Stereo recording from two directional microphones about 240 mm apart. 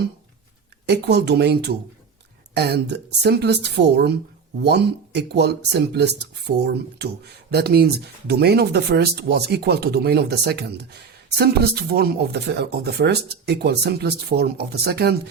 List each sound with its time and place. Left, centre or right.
0.9 s a woman's voice: right
7.5 s speech: right